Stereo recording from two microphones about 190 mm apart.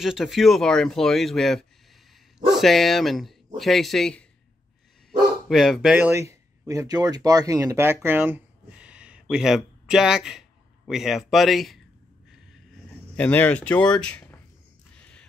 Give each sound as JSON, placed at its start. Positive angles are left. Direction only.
{"t": 0.0, "sound": "speech", "side_deg": 0}
{"t": 5.5, "sound": "speech", "side_deg": 0}
{"t": 13.1, "sound": "speech", "side_deg": 10}
{"t": 15.0, "sound": "music", "side_deg": 5}